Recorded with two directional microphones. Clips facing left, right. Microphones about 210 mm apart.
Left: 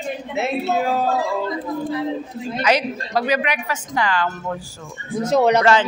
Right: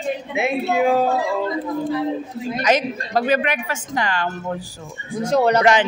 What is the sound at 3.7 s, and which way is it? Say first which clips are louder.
Speech: left 1 dB; 25° right (ahead or behind).